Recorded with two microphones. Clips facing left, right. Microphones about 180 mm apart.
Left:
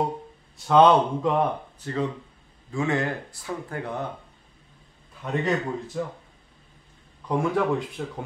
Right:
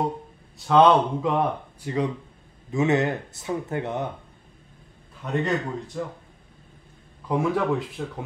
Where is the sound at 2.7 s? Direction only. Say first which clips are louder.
Right 4 dB; 20° right (ahead or behind).